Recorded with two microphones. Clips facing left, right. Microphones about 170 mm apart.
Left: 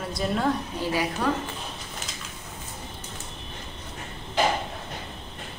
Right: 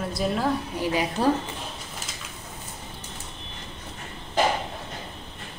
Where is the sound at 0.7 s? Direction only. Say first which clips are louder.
Right 2 dB; 15° right (ahead or behind).